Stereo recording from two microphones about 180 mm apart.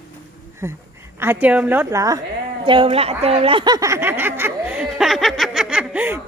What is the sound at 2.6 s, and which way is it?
A woman's voice, 30° right (ahead or behind).